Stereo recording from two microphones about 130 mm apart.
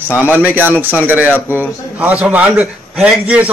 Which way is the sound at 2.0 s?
10° right (ahead or behind).